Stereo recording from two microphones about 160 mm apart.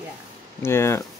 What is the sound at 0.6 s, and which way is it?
Speech, 15° left (ahead or behind).